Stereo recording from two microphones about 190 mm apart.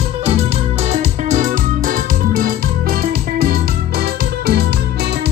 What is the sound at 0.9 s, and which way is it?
Keyboard, 40° right (ahead or behind).